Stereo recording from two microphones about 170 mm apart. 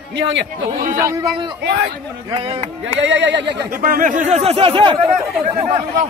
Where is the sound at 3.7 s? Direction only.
55° right (ahead or behind); by 5.6 s 25° right (ahead or behind).